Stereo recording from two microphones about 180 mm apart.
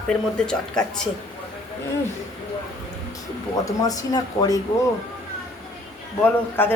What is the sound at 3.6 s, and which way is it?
Speech, 20° left (ahead or behind).